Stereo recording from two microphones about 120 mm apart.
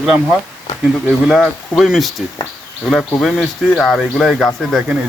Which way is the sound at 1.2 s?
5° right (ahead or behind).